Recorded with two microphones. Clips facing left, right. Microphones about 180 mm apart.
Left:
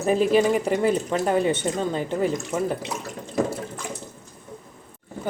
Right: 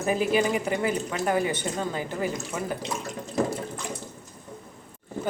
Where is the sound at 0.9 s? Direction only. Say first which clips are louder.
Left 4 dB; 25° left (ahead or behind).